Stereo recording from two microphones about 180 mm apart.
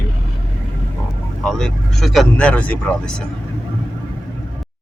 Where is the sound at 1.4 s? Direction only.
Centre (ahead or behind).